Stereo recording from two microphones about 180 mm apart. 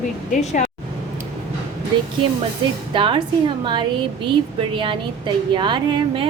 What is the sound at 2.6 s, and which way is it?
Speech, 25° right (ahead or behind).